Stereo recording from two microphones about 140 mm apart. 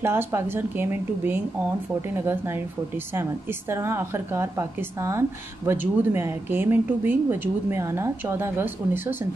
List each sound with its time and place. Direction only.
0.0 s speech: 15° right (ahead or behind)
3.7 s speech: 20° right (ahead or behind)